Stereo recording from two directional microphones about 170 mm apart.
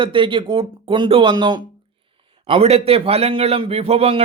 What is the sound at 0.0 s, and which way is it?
A man's voice, 30° right (ahead or behind).